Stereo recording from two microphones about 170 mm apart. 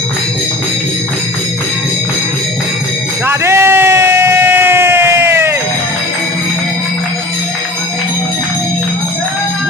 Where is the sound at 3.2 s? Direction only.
15° right (ahead or behind).